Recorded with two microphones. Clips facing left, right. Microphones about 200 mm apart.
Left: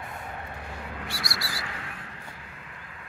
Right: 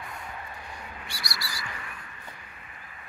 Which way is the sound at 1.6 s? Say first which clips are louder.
Left 2 dB; 85° left.